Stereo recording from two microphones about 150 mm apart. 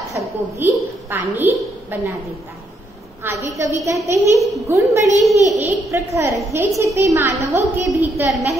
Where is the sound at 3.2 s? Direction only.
15° right (ahead or behind).